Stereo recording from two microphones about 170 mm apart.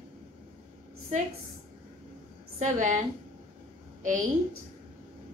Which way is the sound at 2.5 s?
45° right (ahead or behind).